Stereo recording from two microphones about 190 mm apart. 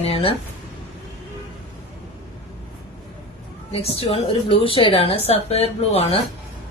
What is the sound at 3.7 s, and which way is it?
A woman's voice, 30° left (ahead or behind).